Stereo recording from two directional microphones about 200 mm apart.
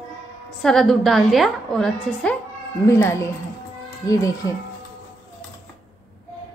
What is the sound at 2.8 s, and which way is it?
Speech, 15° left (ahead or behind).